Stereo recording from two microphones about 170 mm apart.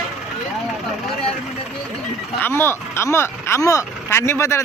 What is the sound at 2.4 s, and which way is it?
Speech, 15° left (ahead or behind).